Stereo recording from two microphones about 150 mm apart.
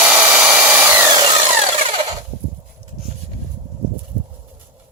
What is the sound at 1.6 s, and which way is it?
Wood, 45° right (ahead or behind).